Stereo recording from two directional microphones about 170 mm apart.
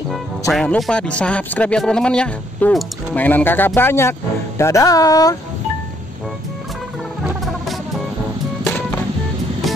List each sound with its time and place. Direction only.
0.5 s speech: centre (ahead or behind); by 5.4 s 20° left (ahead or behind)